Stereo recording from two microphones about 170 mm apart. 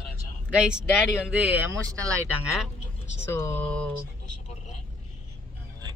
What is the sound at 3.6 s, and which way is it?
Speech, 5° left (ahead or behind).